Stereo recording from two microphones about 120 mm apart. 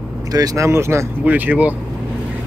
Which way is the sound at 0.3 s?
30° right (ahead or behind).